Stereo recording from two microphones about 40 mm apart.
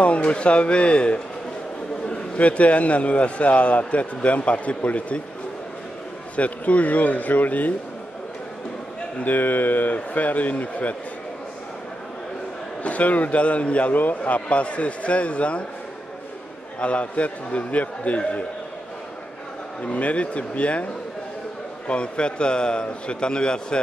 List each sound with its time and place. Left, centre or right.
0.0 s a man's voice: left
6.3 s speech: left
9.2 s a man's voice: left
12.8 s a man's voice: left
16.8 s a man's voice: left
19.8 s a man's voice: left
21.8 s a man's voice: left